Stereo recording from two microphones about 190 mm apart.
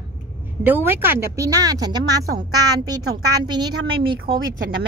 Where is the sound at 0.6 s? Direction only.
10° right (ahead or behind).